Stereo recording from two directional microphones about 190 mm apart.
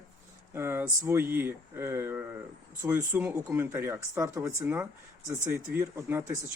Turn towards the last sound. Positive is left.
turn(degrees=-10)  # may be behind; listen again after turning